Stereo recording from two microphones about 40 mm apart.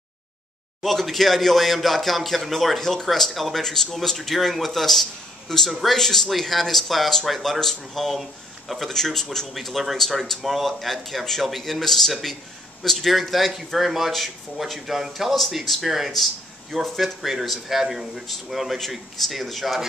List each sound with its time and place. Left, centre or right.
0.8 s speech: centre
2.8 s speech: centre
3.1 s speech: centre
9.5 s speech: centre